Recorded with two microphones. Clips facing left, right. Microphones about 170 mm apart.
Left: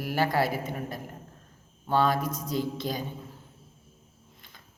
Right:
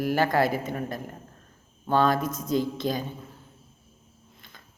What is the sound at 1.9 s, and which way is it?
Speech, 10° left (ahead or behind).